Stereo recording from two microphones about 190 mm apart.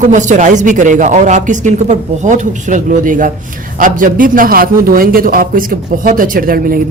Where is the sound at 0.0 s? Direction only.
40° right (ahead or behind).